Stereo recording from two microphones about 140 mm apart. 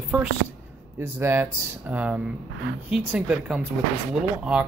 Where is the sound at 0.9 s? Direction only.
15° right (ahead or behind).